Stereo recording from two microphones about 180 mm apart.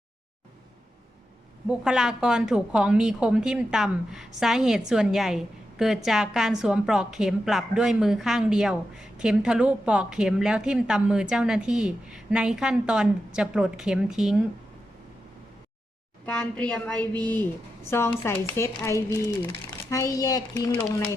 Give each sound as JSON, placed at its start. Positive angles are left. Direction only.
{"t": 1.6, "sound": "a woman's voice", "side_deg": -5}
{"t": 16.2, "sound": "speech", "side_deg": 5}